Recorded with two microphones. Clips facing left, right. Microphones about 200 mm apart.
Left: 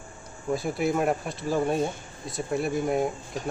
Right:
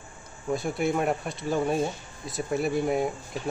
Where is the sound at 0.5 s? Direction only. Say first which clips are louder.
Left 1 dB; centre (ahead or behind).